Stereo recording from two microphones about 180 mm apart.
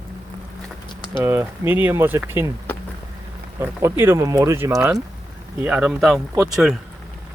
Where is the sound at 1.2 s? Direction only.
15° right (ahead or behind).